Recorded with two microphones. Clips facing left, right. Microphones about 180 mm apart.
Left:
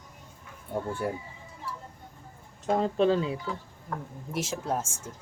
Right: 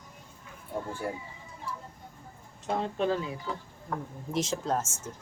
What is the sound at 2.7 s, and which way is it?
Speech, 35° left (ahead or behind).